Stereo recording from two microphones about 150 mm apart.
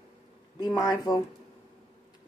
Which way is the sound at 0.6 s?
25° left (ahead or behind).